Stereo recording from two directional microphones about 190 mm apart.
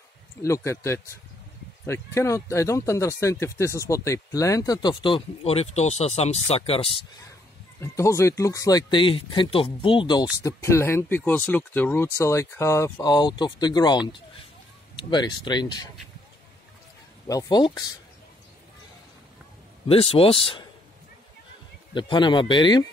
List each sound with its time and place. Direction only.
0.4 s speech: 15° left (ahead or behind); by 7.0 s 30° left (ahead or behind)
7.8 s speech: 15° left (ahead or behind)
10.4 s speech: 15° left (ahead or behind)
17.3 s speech: 20° left (ahead or behind)
19.9 s speech: 30° left (ahead or behind)
21.9 s speech: 25° left (ahead or behind)